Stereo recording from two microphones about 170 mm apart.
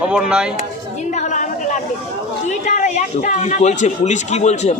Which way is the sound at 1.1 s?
45° left (ahead or behind).